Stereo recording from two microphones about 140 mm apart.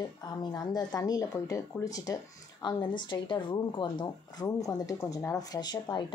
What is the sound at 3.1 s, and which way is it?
Speech, 35° left (ahead or behind).